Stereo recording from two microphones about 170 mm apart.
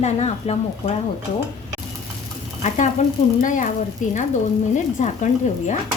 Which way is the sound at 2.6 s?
45° left (ahead or behind).